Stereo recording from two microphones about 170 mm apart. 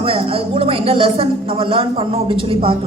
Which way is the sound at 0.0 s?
35° right (ahead or behind).